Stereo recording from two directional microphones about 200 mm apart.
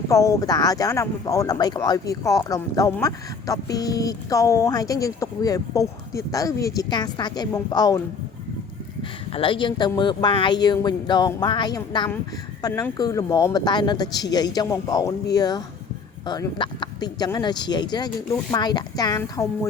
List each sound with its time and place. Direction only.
0.1 s speech: 15° left (ahead or behind)
9.3 s speech: 25° left (ahead or behind)